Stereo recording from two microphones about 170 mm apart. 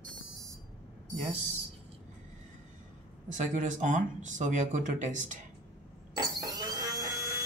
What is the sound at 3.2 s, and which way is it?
Speech, 45° right (ahead or behind).